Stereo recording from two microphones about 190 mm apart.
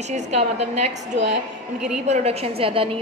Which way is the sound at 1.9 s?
35° right (ahead or behind).